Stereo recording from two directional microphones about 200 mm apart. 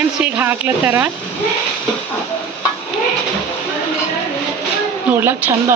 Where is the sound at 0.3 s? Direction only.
10° right (ahead or behind).